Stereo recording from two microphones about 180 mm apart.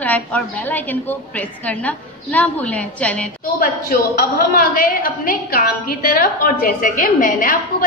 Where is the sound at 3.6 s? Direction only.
55° left (ahead or behind).